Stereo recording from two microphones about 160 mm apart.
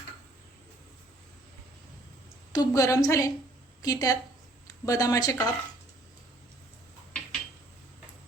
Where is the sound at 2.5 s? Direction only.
25° left (ahead or behind).